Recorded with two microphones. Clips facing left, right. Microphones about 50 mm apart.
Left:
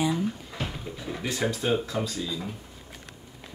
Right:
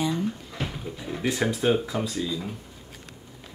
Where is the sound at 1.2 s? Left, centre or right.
Centre.